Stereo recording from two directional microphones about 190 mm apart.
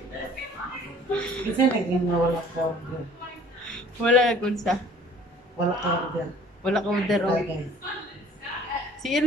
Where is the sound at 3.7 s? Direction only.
5° left (ahead or behind).